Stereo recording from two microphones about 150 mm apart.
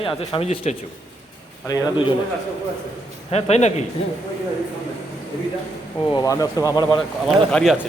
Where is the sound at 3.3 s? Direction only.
45° left (ahead or behind).